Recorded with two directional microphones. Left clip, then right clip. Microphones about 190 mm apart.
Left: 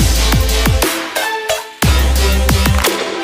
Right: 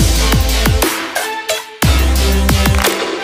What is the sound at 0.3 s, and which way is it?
Music, centre (ahead or behind).